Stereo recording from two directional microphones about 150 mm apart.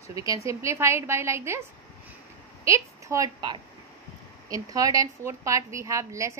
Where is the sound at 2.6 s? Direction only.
20° right (ahead or behind).